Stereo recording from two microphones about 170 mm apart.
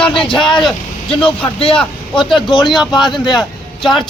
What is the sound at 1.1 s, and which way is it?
Speech, 30° left (ahead or behind).